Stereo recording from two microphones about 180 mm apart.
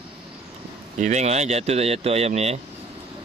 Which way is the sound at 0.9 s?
40° right (ahead or behind).